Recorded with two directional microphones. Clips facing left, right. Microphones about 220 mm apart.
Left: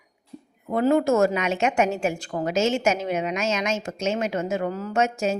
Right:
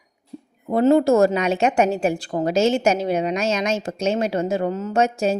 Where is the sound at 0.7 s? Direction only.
35° right (ahead or behind).